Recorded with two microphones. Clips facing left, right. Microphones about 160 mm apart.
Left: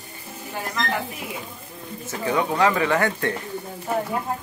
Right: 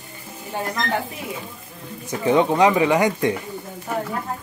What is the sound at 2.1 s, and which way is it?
Speech, 20° right (ahead or behind).